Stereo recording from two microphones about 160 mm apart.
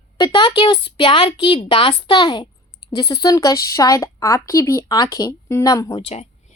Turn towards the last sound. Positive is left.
turn(degrees=40)  # may be behind; listen again after turning